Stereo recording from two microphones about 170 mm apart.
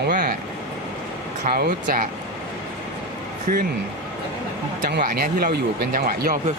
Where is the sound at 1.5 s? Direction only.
60° right (ahead or behind).